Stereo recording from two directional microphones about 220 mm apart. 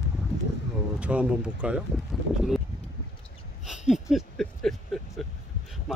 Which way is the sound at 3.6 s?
Centre (ahead or behind).